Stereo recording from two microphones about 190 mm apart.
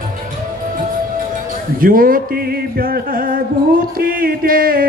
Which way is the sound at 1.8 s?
50° right (ahead or behind).